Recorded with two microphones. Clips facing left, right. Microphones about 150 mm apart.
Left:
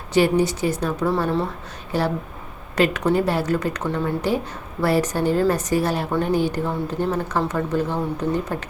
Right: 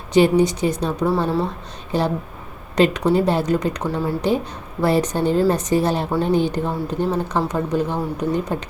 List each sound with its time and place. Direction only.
0.1 s a woman's voice: 20° right (ahead or behind)